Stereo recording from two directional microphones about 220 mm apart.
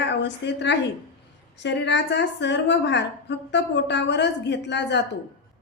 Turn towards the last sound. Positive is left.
turn(degrees=50)  # may be behind; listen again after turning